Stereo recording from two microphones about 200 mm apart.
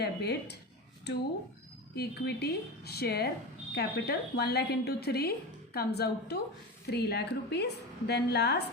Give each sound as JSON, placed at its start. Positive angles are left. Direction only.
{"t": 0.0, "sound": "a woman's voice", "side_deg": 55}
{"t": 2.0, "sound": "a woman's voice", "side_deg": 55}